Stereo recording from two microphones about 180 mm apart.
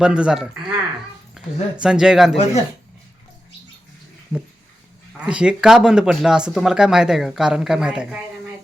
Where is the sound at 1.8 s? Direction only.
5° right (ahead or behind).